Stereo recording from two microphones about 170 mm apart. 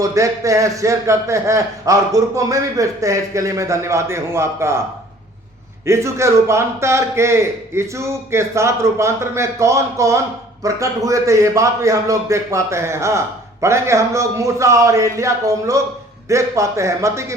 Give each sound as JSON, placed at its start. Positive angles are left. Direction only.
{"t": 0.0, "sound": "speech", "side_deg": -20}
{"t": 5.8, "sound": "a man's voice", "side_deg": -15}